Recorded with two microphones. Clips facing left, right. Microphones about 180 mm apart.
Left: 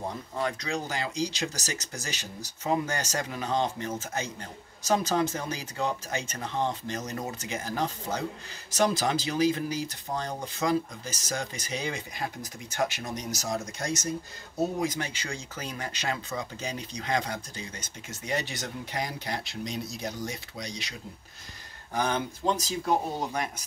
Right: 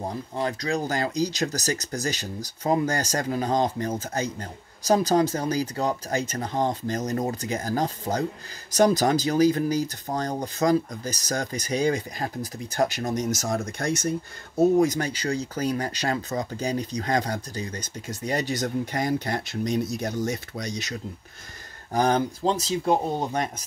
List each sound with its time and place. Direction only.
0.1 s speech: 35° right (ahead or behind); by 14.0 s 60° right (ahead or behind)
14.8 s speech: 40° right (ahead or behind)
21.9 s speech: 40° right (ahead or behind)